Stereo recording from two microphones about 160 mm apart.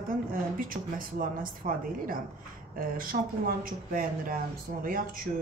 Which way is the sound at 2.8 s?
60° right (ahead or behind).